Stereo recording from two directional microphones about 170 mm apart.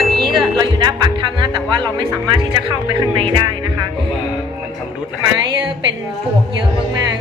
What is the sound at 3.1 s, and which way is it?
Speech, 30° right (ahead or behind).